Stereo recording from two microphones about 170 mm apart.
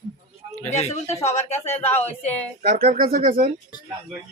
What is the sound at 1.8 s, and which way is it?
Speech, 10° left (ahead or behind).